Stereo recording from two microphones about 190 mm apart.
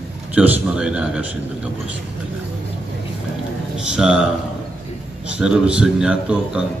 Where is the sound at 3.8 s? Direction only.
5° right (ahead or behind).